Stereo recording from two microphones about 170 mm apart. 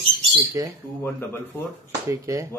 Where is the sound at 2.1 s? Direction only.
20° right (ahead or behind).